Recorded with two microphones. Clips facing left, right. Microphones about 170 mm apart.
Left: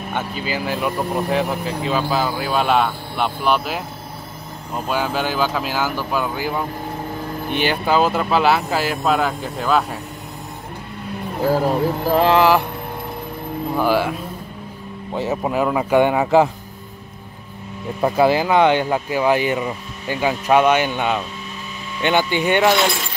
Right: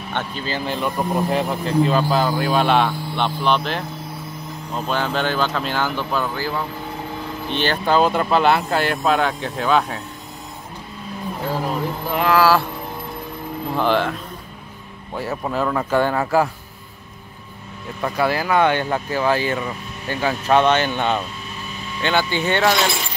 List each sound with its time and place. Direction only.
0.1 s speech: 10° left (ahead or behind)
11.6 s a sound: 35° left (ahead or behind); by 12.6 s 20° left (ahead or behind)
13.7 s speech: 10° left (ahead or behind)
15.1 s speech: 20° left (ahead or behind)
18.0 s speech: 25° left (ahead or behind)